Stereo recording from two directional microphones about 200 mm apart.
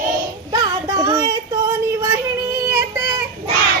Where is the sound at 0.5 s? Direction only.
20° right (ahead or behind).